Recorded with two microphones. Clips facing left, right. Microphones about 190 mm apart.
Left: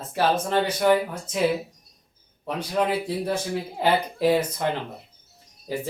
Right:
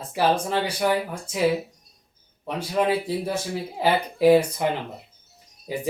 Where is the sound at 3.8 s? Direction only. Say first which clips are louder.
Right 2 dB; 10° right (ahead or behind).